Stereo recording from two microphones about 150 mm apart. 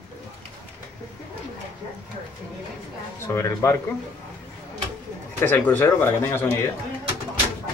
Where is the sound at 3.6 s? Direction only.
20° left (ahead or behind).